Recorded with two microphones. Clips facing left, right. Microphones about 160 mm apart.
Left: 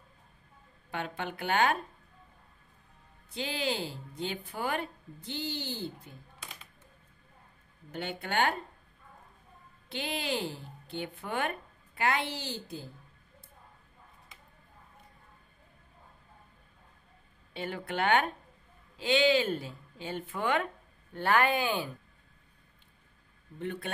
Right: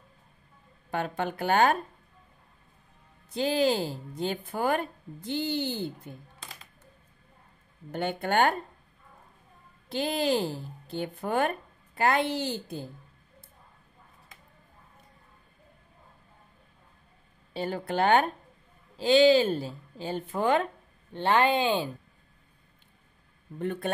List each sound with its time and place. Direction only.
0.8 s speech: 40° right (ahead or behind)
3.3 s speech: 40° right (ahead or behind)
7.9 s speech: 50° right (ahead or behind)
9.8 s speech: 40° right (ahead or behind)
17.6 s speech: 35° right (ahead or behind)
21.1 s speech: 25° right (ahead or behind)
23.6 s speech: 45° right (ahead or behind)